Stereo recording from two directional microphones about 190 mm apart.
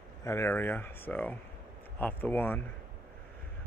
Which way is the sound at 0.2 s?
15° left (ahead or behind).